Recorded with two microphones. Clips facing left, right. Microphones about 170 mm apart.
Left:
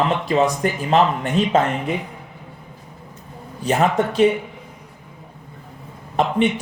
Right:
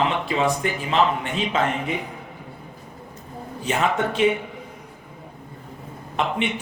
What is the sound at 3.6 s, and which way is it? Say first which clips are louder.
Speech: left 4 dB; 40° left (ahead or behind).